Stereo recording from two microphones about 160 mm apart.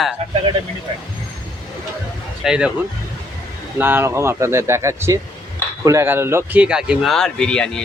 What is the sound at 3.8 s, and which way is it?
Speech, 15° right (ahead or behind).